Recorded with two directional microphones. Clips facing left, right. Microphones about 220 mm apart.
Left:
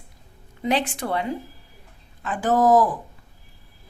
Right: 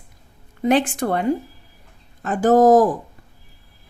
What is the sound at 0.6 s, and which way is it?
Speech, 50° right (ahead or behind).